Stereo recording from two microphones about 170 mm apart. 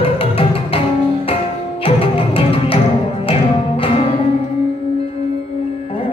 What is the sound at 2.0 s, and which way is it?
Music, 35° left (ahead or behind).